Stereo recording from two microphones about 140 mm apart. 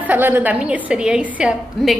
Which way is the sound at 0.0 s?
15° right (ahead or behind).